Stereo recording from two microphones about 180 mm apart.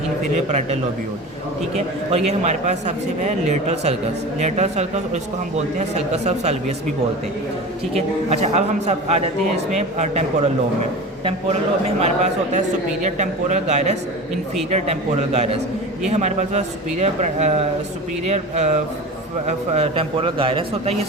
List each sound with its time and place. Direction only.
1.7 s a man's voice: 35° right (ahead or behind)
7.9 s a man's voice: 35° right (ahead or behind)
11.9 s a man's voice: 35° right (ahead or behind)